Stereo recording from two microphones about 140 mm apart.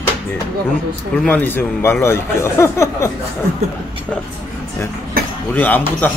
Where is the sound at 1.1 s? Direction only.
10° left (ahead or behind).